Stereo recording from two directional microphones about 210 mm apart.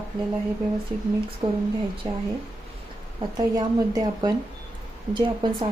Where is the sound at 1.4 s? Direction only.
25° right (ahead or behind).